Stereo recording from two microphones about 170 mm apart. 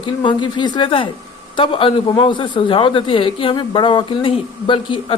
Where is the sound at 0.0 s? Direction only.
30° left (ahead or behind).